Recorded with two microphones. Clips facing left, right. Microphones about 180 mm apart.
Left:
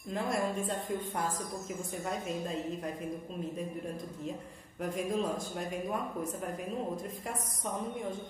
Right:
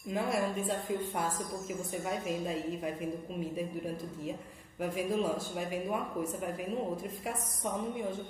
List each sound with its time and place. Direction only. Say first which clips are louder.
0.1 s a woman's voice: right 1 dB; 10° right (ahead or behind)
4.8 s speech: right 1 dB; 5° right (ahead or behind)